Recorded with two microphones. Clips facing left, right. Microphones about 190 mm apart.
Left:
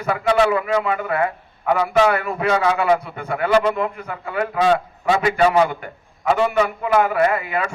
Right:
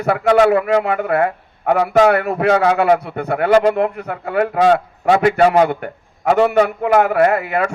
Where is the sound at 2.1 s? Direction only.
70° right (ahead or behind).